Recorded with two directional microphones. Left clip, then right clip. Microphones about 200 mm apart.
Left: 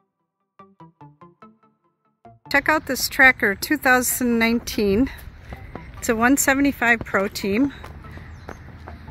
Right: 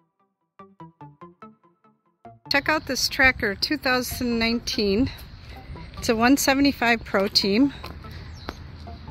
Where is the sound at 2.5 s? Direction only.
20° left (ahead or behind).